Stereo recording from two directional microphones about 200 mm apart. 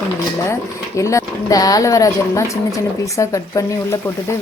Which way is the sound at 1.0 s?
15° left (ahead or behind).